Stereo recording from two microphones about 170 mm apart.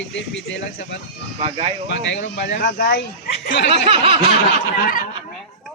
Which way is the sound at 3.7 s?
35° right (ahead or behind).